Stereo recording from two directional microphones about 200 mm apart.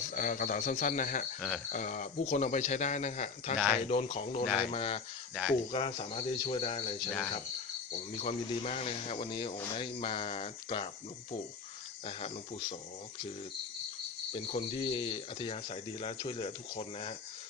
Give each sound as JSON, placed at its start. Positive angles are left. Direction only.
{"t": 0.1, "sound": "speech", "side_deg": 45}
{"t": 1.4, "sound": "cricket", "side_deg": 0}
{"t": 1.7, "sound": "speech", "side_deg": 40}
{"t": 5.3, "sound": "speech", "side_deg": -5}
{"t": 5.7, "sound": "speech", "side_deg": 30}
{"t": 8.2, "sound": "speech", "side_deg": 35}
{"t": 12.0, "sound": "speech", "side_deg": 30}
{"t": 14.3, "sound": "speech", "side_deg": 30}